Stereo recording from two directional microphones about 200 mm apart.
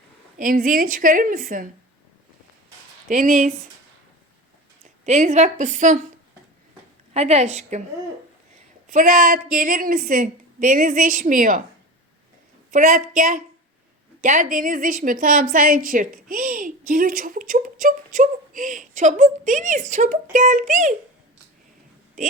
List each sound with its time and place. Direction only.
0.3 s a woman's voice: 40° right (ahead or behind)
3.1 s a woman's voice: 40° right (ahead or behind)
4.8 s speech: 35° right (ahead or behind)
7.1 s a woman's voice: 30° right (ahead or behind)
8.9 s a woman's voice: 40° right (ahead or behind)
12.7 s a woman's voice: 45° right (ahead or behind)